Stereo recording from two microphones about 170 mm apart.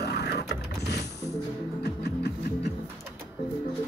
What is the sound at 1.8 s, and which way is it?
Music, 75° left (ahead or behind).